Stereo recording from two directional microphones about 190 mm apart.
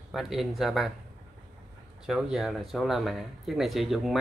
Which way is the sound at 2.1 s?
Centre (ahead or behind).